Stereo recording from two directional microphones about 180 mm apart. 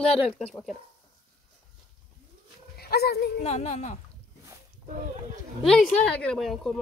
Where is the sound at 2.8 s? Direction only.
60° left (ahead or behind).